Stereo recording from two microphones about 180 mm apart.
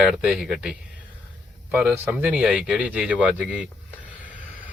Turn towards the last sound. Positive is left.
turn(degrees=-5)  # may be behind; listen again after turning